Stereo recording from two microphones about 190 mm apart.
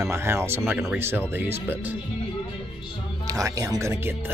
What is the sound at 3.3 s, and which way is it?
Speech, 15° right (ahead or behind).